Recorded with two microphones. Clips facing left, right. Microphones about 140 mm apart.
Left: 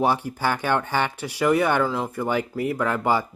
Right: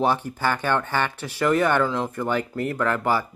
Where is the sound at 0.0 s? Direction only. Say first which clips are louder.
Even; 10° left (ahead or behind).